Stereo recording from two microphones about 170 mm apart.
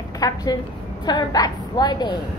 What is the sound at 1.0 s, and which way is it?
A woman's voice, 25° left (ahead or behind).